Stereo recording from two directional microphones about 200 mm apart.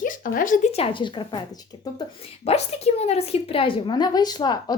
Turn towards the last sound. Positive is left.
turn(degrees=20)  # may be behind; listen again after turning